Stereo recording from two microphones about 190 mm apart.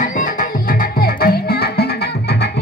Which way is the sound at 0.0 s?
45° left (ahead or behind).